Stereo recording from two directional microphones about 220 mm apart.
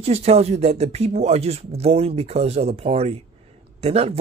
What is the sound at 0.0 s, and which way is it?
Speech, 30° right (ahead or behind).